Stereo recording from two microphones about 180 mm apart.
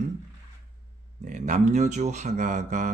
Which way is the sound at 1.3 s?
45° right (ahead or behind).